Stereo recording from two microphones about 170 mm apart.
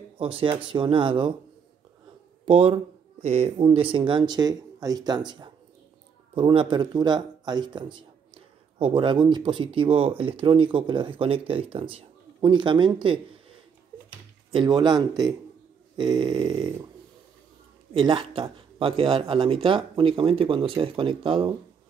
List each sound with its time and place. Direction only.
0.2 s speech: 35° right (ahead or behind)
2.4 s speech: 35° right (ahead or behind)
14.5 s speech: 30° right (ahead or behind)
17.9 s speech: 30° right (ahead or behind)